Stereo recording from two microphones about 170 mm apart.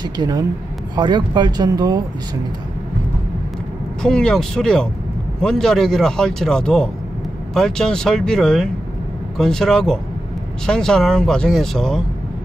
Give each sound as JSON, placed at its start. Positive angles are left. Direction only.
{"t": 0.2, "sound": "speech", "side_deg": -20}
{"t": 4.0, "sound": "speech", "side_deg": 5}